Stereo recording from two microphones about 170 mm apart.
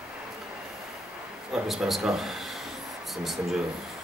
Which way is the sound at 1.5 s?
Centre (ahead or behind).